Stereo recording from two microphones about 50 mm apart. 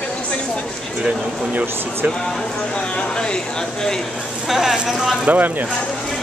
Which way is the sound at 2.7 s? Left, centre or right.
Centre.